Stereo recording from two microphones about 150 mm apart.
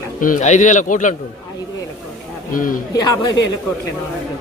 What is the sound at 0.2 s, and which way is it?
Speech, 55° left (ahead or behind).